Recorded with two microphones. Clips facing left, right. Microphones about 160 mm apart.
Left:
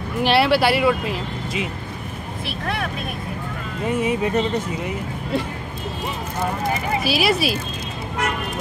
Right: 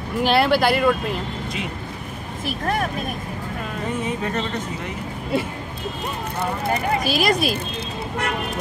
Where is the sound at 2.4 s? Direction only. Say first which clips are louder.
Right 3 dB; 45° right (ahead or behind).